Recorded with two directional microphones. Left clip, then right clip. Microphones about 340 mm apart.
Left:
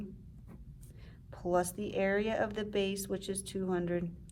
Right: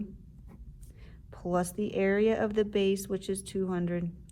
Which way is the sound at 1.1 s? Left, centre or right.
Centre.